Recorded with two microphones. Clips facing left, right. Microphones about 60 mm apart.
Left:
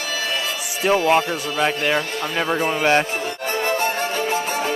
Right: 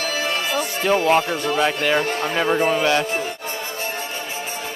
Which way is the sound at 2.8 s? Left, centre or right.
Left.